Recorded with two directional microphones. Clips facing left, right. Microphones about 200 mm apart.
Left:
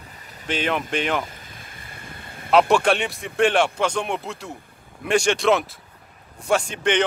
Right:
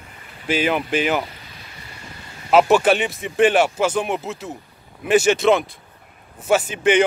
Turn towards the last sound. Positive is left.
turn(degrees=-5)  # may be behind; listen again after turning